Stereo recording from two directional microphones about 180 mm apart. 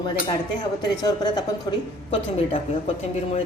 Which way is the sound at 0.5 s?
25° left (ahead or behind).